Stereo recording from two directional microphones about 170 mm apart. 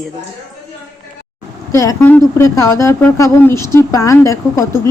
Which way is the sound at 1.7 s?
20° left (ahead or behind).